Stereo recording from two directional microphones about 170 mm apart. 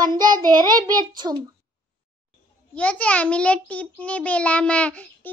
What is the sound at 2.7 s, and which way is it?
A child's voice, 5° left (ahead or behind).